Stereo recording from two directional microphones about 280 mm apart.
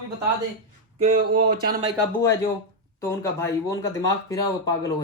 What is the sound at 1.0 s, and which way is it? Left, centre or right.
Speech, right.